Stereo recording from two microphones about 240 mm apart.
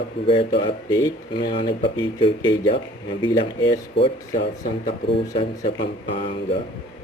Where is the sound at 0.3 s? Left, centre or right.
Left.